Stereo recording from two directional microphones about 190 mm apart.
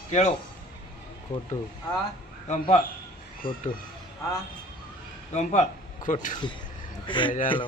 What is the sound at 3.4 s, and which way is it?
Speech, 25° left (ahead or behind).